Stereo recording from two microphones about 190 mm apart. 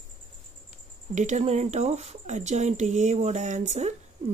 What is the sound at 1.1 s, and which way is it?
Speech, 40° right (ahead or behind).